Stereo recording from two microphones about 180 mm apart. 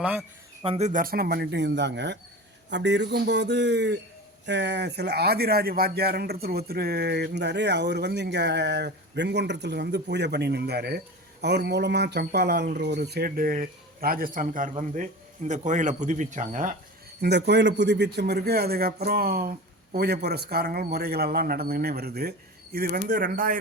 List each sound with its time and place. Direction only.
0.0 s speech: 5° right (ahead or behind)
0.6 s a man's voice: 35° right (ahead or behind)
17.2 s speech: 65° right (ahead or behind); by 23.6 s 50° right (ahead or behind)